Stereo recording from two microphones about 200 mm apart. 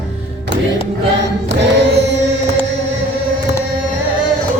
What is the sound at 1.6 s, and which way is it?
Music, 60° right (ahead or behind).